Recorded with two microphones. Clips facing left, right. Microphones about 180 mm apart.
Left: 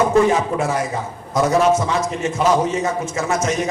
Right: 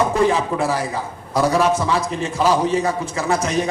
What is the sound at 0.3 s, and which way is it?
Speech, 35° right (ahead or behind).